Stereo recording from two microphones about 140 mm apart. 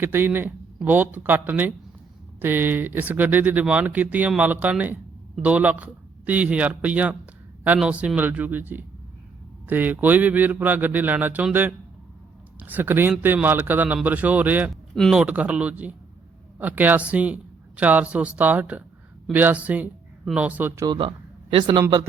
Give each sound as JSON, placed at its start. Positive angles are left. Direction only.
{"t": 0.0, "sound": "speech", "side_deg": -15}
{"t": 14.9, "sound": "speech", "side_deg": 5}
{"t": 15.2, "sound": "speech", "side_deg": -10}
{"t": 20.8, "sound": "speech", "side_deg": -35}